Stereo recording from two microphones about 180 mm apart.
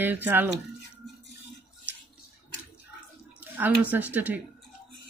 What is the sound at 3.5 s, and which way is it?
Speech, 10° right (ahead or behind).